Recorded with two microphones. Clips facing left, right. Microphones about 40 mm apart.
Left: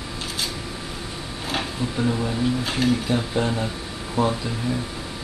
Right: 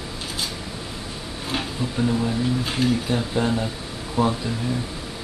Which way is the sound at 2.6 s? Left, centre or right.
Left.